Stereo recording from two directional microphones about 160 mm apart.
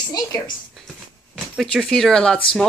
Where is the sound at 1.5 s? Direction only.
Centre (ahead or behind).